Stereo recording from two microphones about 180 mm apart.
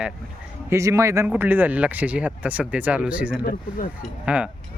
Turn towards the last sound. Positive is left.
turn(degrees=-5)  # may be behind; listen again after turning